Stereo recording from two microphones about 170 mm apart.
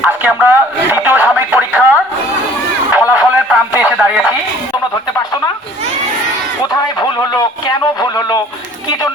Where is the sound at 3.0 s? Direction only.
10° right (ahead or behind).